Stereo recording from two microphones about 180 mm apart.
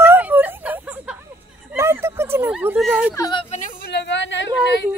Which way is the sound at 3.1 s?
20° left (ahead or behind).